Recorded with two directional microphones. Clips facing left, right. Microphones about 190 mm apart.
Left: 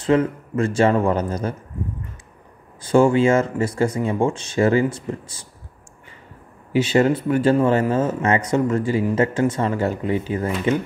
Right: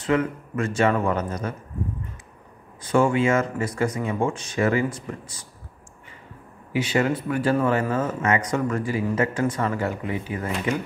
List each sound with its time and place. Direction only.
0.0 s speech: 30° left (ahead or behind)
2.8 s speech: 30° left (ahead or behind)
6.7 s speech: 30° left (ahead or behind)